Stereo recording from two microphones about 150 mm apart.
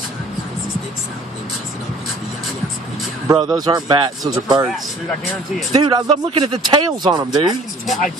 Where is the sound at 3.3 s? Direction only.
30° right (ahead or behind).